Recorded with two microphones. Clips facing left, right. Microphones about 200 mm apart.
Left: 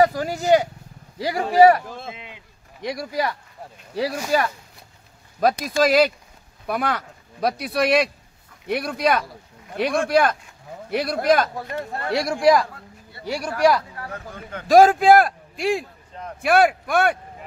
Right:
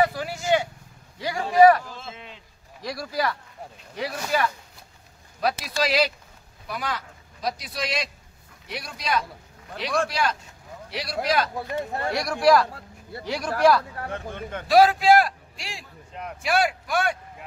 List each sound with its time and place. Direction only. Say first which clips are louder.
0.0 s vehicle: left 5 dB; 40° left (ahead or behind)
1.2 s speech: left 2 dB; 30° left (ahead or behind)
2.1 s speech: left 1 dB; 15° left (ahead or behind)
3.9 s a man's voice: left 5 dB; 40° left (ahead or behind)
11.7 s speech: right 1 dB; 15° right (ahead or behind)
12.1 s speech: left 2 dB; 25° left (ahead or behind)
13.2 s speech: left 1 dB; 10° left (ahead or behind)
13.9 s speech: right 2 dB; 25° right (ahead or behind)
14.5 s a man's voice: left 4 dB; 45° left (ahead or behind)